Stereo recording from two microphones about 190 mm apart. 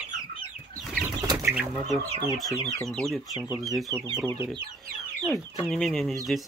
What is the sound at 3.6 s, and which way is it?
Speech, centre (ahead or behind).